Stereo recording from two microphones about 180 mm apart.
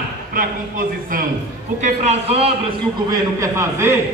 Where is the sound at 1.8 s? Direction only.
35° right (ahead or behind).